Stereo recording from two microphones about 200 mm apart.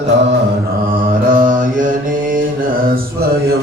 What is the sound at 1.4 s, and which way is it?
Mantra, 40° right (ahead or behind).